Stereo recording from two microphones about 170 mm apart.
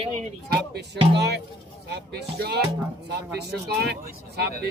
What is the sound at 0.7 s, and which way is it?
Speech, 80° right.